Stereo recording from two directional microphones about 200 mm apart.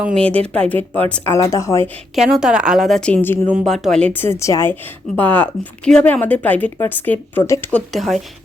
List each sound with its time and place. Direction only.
0.2 s a woman's voice: 5° left (ahead or behind)
0.8 s speech: 30° right (ahead or behind)
1.1 s a woman's voice: 15° left (ahead or behind)
2.1 s a woman's voice: centre (ahead or behind); by 7.8 s 15° left (ahead or behind)
7.9 s a woman's voice: centre (ahead or behind)